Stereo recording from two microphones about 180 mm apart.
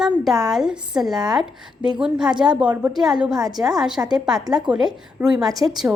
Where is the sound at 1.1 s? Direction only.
20° right (ahead or behind).